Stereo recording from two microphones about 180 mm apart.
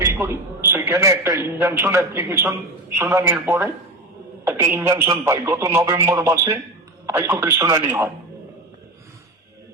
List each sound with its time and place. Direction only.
0.0 s a man's voice: 15° right (ahead or behind)